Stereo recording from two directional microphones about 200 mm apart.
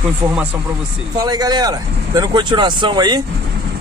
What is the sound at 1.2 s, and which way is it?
Speech, 20° right (ahead or behind).